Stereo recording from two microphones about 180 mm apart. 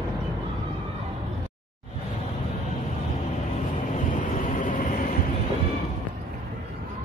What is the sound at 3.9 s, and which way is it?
Vehicle, 45° left (ahead or behind).